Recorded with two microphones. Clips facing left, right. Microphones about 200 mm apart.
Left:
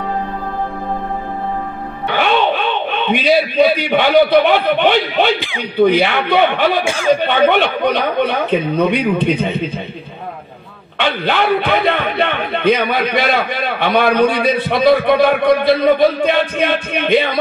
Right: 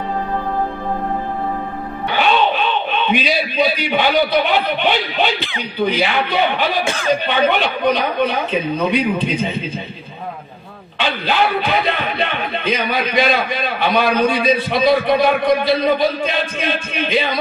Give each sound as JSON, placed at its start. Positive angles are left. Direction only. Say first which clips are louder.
{"t": 2.1, "sound": "a man's voice", "louder": "left 1 dB", "side_deg": 55}
{"t": 6.8, "sound": "speech", "louder": "left 2 dB", "side_deg": 10}
{"t": 7.2, "sound": "a man's voice", "louder": "left 4 dB", "side_deg": 55}
{"t": 11.0, "sound": "a man's voice", "louder": "left 2 dB", "side_deg": 60}